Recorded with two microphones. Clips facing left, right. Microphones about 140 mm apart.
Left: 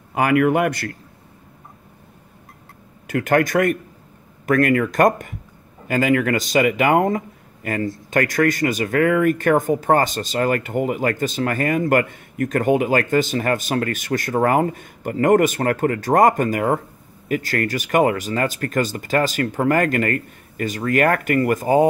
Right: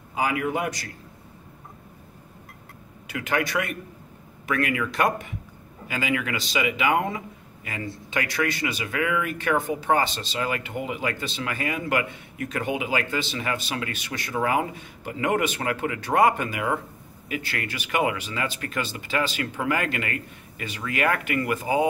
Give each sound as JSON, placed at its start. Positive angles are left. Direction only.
{"t": 0.1, "sound": "a man's voice", "side_deg": 65}
{"t": 3.1, "sound": "speech", "side_deg": 50}